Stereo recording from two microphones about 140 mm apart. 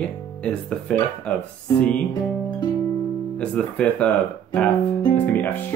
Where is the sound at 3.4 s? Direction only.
10° left (ahead or behind).